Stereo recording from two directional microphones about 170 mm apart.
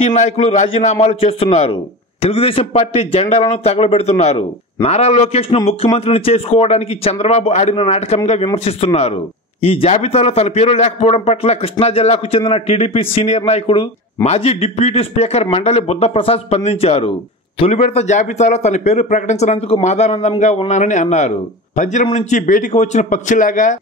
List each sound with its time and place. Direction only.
0.0 s a man's voice: 40° left (ahead or behind)